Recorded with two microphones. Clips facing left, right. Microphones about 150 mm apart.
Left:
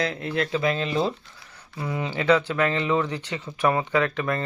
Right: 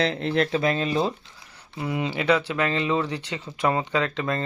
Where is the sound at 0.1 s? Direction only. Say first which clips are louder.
Right 3 dB; 30° right (ahead or behind).